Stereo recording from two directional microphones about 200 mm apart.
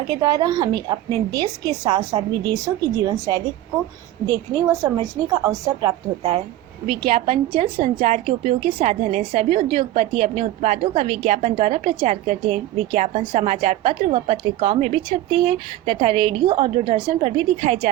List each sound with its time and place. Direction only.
0.1 s a woman's voice: 20° right (ahead or behind)
4.9 s a woman's voice: 15° right (ahead or behind)